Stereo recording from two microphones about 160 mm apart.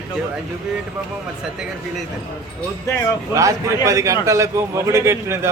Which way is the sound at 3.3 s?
20° right (ahead or behind).